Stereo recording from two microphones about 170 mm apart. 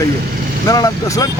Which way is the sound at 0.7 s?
20° left (ahead or behind).